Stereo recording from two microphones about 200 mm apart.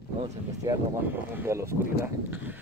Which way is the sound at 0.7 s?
15° right (ahead or behind).